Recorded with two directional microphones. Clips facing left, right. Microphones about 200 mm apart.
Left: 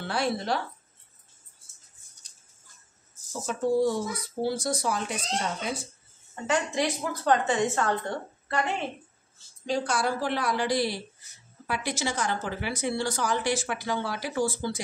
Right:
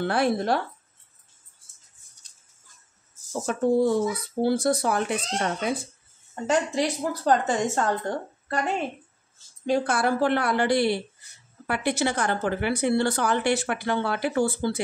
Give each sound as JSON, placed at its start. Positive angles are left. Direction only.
{"t": 0.0, "sound": "speech", "side_deg": -55}
{"t": 3.4, "sound": "speech", "side_deg": -55}
{"t": 6.3, "sound": "a woman's voice", "side_deg": -40}
{"t": 9.7, "sound": "speech", "side_deg": -55}